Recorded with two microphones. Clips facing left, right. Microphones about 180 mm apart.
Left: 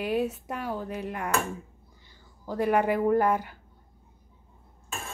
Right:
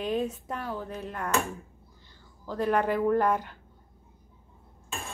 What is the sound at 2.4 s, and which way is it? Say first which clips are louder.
Cutlery: left 2 dB; 10° left (ahead or behind).